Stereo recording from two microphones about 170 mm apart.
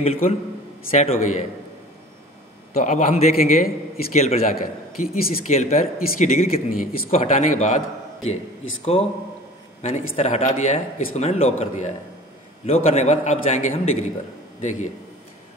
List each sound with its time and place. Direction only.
0.0 s a man's voice: 35° left (ahead or behind)
2.8 s a man's voice: 45° left (ahead or behind)
4.5 s a man's voice: 60° left (ahead or behind)
5.5 s speech: 40° left (ahead or behind)
9.8 s a man's voice: 40° left (ahead or behind)